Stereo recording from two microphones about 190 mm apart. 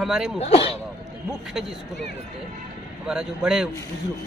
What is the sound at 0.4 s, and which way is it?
Speech, 30° left (ahead or behind).